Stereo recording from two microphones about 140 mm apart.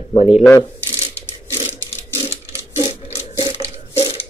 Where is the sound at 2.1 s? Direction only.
30° right (ahead or behind).